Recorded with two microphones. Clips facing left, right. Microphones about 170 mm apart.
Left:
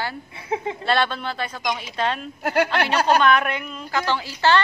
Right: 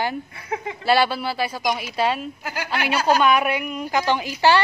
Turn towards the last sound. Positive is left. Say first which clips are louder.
# right 2 dB
turn(degrees=-10)  # may be behind; listen again after turning